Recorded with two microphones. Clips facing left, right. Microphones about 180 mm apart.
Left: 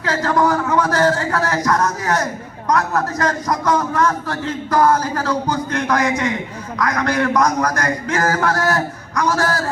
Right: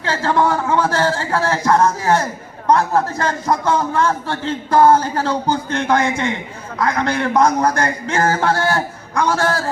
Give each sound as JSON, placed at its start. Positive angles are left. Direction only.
{"t": 0.0, "sound": "a man's voice", "side_deg": -30}